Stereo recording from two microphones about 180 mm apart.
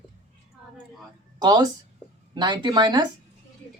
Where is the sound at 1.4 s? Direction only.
20° right (ahead or behind).